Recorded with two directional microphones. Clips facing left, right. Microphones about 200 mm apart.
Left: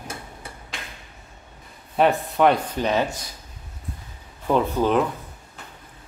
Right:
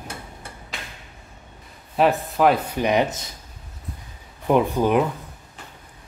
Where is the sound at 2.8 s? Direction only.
15° right (ahead or behind).